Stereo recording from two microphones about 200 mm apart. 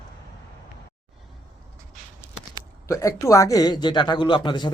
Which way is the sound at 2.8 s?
15° left (ahead or behind).